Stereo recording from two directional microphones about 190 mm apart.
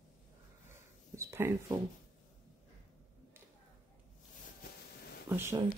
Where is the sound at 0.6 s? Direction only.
15° right (ahead or behind).